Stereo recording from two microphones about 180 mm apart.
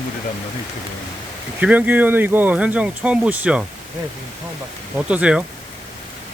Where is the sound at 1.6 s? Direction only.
10° right (ahead or behind).